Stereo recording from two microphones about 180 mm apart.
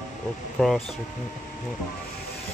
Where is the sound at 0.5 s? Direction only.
Centre (ahead or behind).